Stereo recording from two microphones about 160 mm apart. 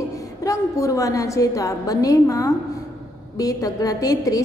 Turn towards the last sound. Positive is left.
turn(degrees=20)  # may be behind; listen again after turning